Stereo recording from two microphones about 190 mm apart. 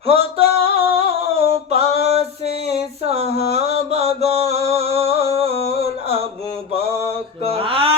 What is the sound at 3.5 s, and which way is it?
Mantra, 35° right (ahead or behind).